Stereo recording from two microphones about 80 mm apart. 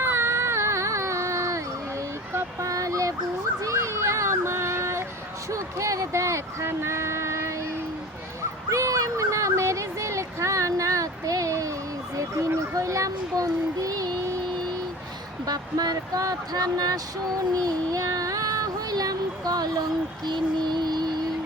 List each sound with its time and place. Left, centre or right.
0.0 s a sound: right
5.5 s speech: right
8.7 s a sound: right
12.1 s child singing: right
15.4 s speech: right
17.6 s child singing: right
20.2 s mantra: right